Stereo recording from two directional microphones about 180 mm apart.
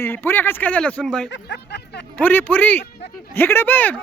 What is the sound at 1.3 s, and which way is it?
Speech, 70° left (ahead or behind).